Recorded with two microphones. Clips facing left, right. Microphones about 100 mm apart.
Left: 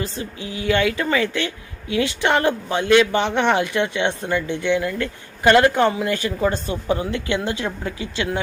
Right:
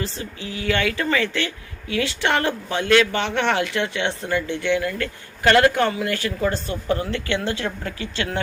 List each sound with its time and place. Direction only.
0.0 s speech: 20° left (ahead or behind)